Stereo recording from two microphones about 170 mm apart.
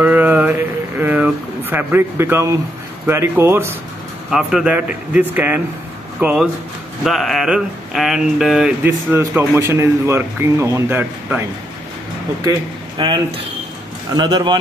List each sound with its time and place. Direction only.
0.0 s a sound: 10° right (ahead or behind)
3.1 s speech: 15° right (ahead or behind)
4.3 s speech: 5° right (ahead or behind)
12.4 s speech: 25° right (ahead or behind)